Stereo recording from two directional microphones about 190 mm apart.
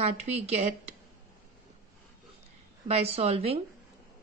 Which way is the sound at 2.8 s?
30° right (ahead or behind).